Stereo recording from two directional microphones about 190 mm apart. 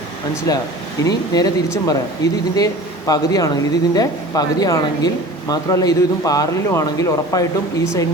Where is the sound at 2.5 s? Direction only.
20° left (ahead or behind).